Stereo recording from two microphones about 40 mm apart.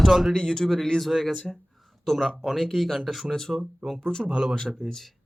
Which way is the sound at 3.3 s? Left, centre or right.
Centre.